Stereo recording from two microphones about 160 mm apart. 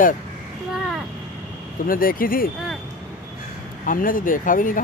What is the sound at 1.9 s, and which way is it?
Speech, 60° left (ahead or behind).